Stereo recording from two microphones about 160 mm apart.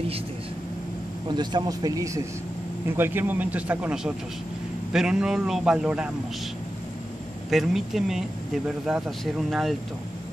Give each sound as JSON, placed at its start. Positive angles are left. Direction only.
{"t": 1.3, "sound": "a man's voice", "side_deg": -25}
{"t": 7.5, "sound": "speech", "side_deg": 0}